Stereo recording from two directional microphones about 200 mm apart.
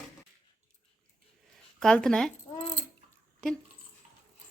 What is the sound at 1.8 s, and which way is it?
Speech, 5° left (ahead or behind).